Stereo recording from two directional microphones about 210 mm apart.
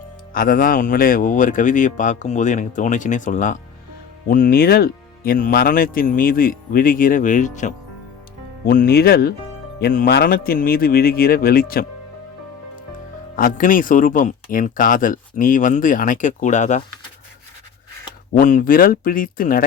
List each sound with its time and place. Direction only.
0.3 s speech: 45° left (ahead or behind)
13.3 s speech: 40° left (ahead or behind)
18.3 s speech: 40° left (ahead or behind)